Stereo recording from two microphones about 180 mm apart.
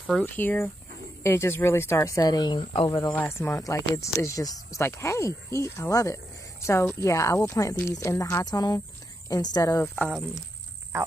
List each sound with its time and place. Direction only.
0.2 s speech: 10° left (ahead or behind); by 3.0 s 25° left (ahead or behind)
3.1 s a woman's voice: 10° left (ahead or behind)
9.9 s speech: 5° left (ahead or behind)